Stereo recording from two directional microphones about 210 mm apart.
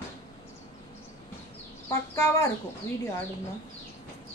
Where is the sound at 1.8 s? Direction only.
15° left (ahead or behind).